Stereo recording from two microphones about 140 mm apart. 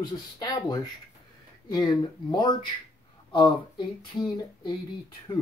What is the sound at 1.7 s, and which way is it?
Speech, 30° left (ahead or behind).